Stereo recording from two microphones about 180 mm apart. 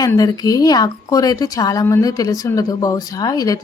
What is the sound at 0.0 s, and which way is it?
A woman's voice, 20° left (ahead or behind).